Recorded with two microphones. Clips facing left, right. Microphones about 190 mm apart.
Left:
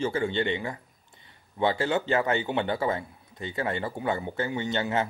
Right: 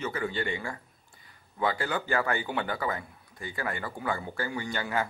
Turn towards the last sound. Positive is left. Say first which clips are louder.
# left 4 dB
turn(degrees=25)  # may be behind; listen again after turning